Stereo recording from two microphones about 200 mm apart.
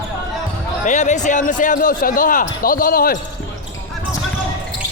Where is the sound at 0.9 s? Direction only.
35° left (ahead or behind).